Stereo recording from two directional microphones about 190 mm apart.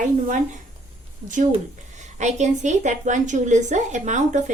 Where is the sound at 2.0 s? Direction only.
40° right (ahead or behind).